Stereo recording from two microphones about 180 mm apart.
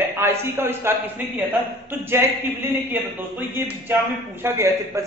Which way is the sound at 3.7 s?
10° right (ahead or behind).